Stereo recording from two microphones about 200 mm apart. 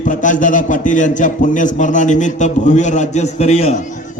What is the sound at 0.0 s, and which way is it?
A man's voice, 40° left (ahead or behind).